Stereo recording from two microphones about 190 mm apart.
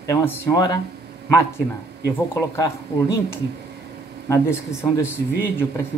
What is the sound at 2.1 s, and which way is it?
Speech, 10° left (ahead or behind).